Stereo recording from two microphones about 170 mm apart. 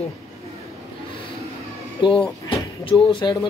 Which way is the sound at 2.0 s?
30° left (ahead or behind).